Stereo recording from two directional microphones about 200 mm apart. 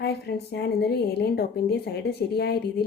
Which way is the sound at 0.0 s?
55° left (ahead or behind).